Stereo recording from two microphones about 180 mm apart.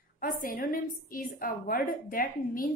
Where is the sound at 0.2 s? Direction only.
50° left (ahead or behind).